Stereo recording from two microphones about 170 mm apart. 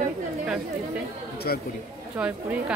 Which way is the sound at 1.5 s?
65° left (ahead or behind).